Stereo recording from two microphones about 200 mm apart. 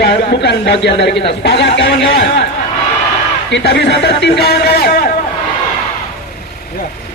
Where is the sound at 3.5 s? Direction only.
60° left (ahead or behind).